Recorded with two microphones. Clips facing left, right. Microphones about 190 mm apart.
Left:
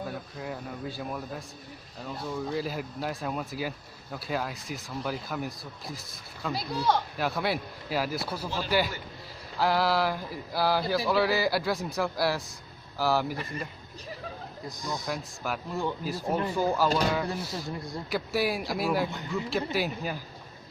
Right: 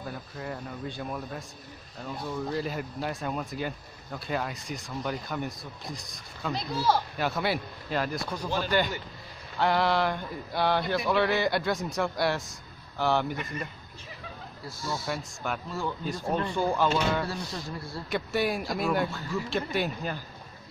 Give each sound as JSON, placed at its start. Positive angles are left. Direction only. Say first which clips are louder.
{"t": 0.4, "sound": "speech", "louder": "right 2 dB", "side_deg": 0}
{"t": 14.6, "sound": "speech", "louder": "right 1 dB", "side_deg": 15}
{"t": 15.0, "sound": "speech", "louder": "even", "side_deg": 0}
{"t": 15.7, "sound": "speech", "louder": "left 4 dB", "side_deg": 20}
{"t": 16.0, "sound": "speech", "louder": "even", "side_deg": 5}
{"t": 17.6, "sound": "speech", "louder": "left 2 dB", "side_deg": 20}
{"t": 18.1, "sound": "speech", "louder": "even", "side_deg": 0}
{"t": 19.0, "sound": "speech", "louder": "even", "side_deg": 20}
{"t": 19.5, "sound": "speech", "louder": "even", "side_deg": 5}